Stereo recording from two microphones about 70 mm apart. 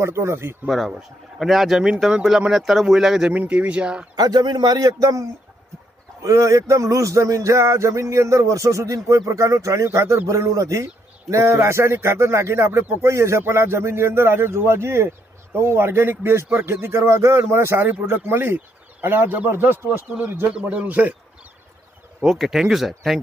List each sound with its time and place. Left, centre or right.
0.0 s a man's voice: right
0.7 s speech: centre
3.3 s speech: centre
4.1 s a man's voice: right
6.2 s a sound: right
9.9 s a man's voice: right
13.0 s a sound: right
13.4 s a man's voice: right
22.2 s speech: centre